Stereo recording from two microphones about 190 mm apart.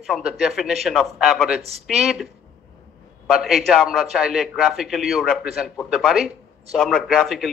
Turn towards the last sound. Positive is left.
turn(degrees=0)  # may be behind; listen again after turning